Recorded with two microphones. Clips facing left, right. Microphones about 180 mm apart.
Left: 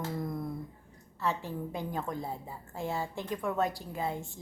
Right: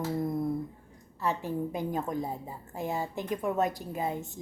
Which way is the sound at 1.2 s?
15° right (ahead or behind).